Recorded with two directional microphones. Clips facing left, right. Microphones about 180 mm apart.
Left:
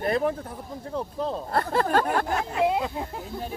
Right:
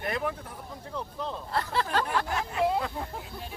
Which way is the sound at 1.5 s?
50° left (ahead or behind).